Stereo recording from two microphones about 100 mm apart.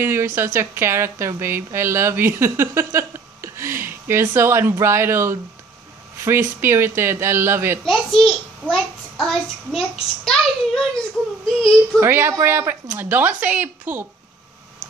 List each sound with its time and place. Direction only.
0.0 s a woman's voice: 25° right (ahead or behind)
7.8 s a child's voice: 5° left (ahead or behind)
12.0 s a woman's voice: 25° right (ahead or behind)